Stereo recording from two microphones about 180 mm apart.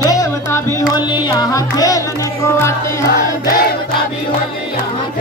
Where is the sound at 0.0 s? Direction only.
20° left (ahead or behind).